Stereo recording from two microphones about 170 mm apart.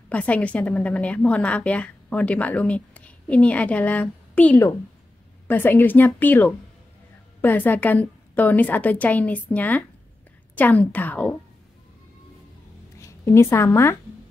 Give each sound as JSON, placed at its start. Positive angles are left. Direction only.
{"t": 0.1, "sound": "a woman's voice", "side_deg": 10}
{"t": 13.0, "sound": "a woman's voice", "side_deg": 15}